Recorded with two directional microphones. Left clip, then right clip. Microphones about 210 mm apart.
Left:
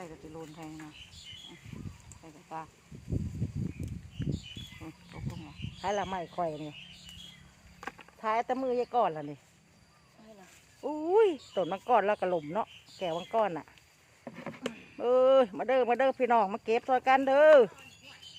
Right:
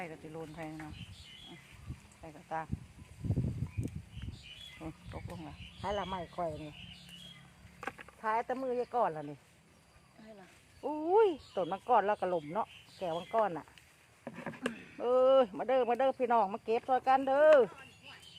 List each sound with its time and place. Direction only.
0.0 s speech: 25° right (ahead or behind)
2.5 s speech: 35° right (ahead or behind)
4.8 s speech: 40° right (ahead or behind)
5.8 s speech: 35° left (ahead or behind)
7.8 s rowboat: 10° right (ahead or behind)
8.2 s speech: 20° left (ahead or behind)
10.8 s speech: 15° left (ahead or behind)
14.3 s a sound: 10° right (ahead or behind)
14.9 s speech: 20° left (ahead or behind)